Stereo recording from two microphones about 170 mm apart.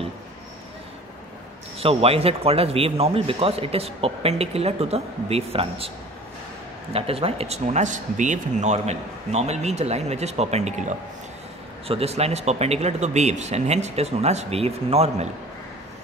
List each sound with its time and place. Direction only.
1.8 s speech: 35° right (ahead or behind)
6.9 s speech: 35° right (ahead or behind)